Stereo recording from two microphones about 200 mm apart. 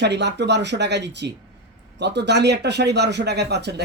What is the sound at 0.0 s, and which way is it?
Speech, 60° right (ahead or behind).